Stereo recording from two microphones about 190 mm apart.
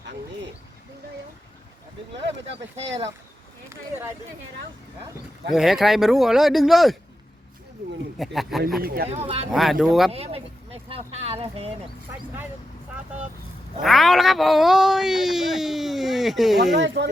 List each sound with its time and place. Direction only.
3.7 s speech: 10° right (ahead or behind)
5.5 s speech: centre (ahead or behind)
8.2 s speech: centre (ahead or behind)
8.8 s speech: 50° right (ahead or behind)
9.0 s speech: 30° right (ahead or behind)
9.5 s speech: centre (ahead or behind)
10.1 s a sound: 30° right (ahead or behind)
13.8 s speech: centre (ahead or behind)
16.7 s speech: 70° right (ahead or behind)